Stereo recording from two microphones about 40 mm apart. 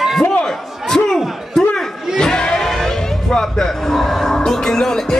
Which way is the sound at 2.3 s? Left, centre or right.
Centre.